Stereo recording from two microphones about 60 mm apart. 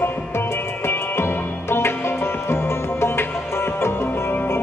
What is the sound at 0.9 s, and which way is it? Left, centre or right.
Music, left.